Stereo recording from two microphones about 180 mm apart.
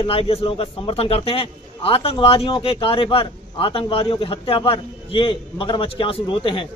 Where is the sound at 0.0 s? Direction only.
30° left (ahead or behind).